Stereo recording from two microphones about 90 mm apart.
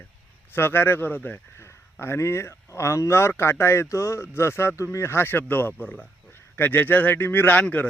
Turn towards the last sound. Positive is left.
turn(degrees=15)  # may be behind; listen again after turning